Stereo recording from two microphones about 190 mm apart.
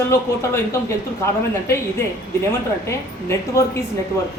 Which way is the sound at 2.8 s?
15° left (ahead or behind).